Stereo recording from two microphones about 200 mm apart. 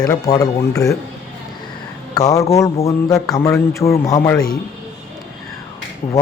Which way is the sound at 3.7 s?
15° left (ahead or behind).